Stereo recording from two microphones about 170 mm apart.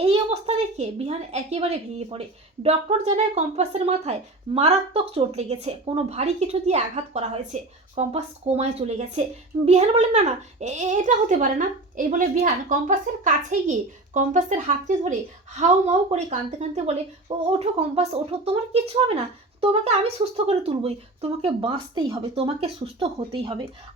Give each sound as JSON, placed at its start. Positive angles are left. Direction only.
{"t": 0.0, "sound": "a woman's voice", "side_deg": -35}